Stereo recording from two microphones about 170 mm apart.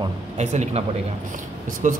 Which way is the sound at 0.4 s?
40° right (ahead or behind).